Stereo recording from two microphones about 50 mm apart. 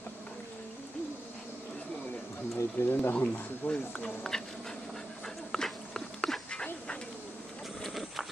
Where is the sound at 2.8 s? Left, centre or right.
Left.